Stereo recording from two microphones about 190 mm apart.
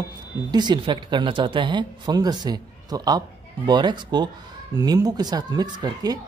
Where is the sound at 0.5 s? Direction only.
20° right (ahead or behind).